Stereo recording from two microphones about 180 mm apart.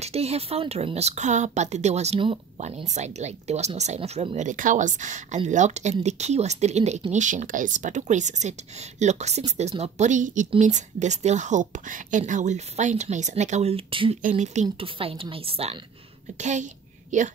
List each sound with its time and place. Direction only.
0.0 s a woman's voice: 35° right (ahead or behind)
14.2 s a woman's voice: 40° right (ahead or behind)